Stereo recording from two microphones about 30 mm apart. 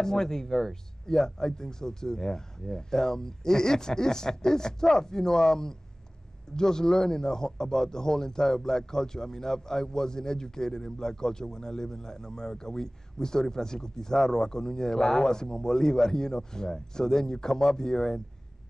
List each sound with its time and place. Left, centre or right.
0.0 s speech: centre